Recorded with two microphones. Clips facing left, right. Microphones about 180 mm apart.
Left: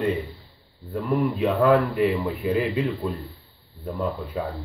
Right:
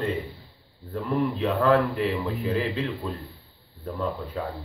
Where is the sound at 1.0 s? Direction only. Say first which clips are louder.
Left 2 dB; 10° left (ahead or behind).